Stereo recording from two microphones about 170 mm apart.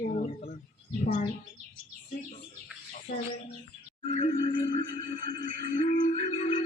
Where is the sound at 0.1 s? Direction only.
50° left (ahead or behind).